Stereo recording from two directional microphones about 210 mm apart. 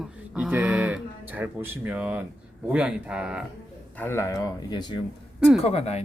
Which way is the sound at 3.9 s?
10° left (ahead or behind).